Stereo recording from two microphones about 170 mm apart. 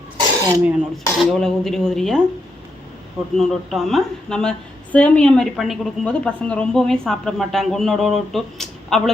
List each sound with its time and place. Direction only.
0.2 s throat clearing: 20° right (ahead or behind)
1.2 s a woman's voice: 5° left (ahead or behind)
3.3 s a woman's voice: centre (ahead or behind)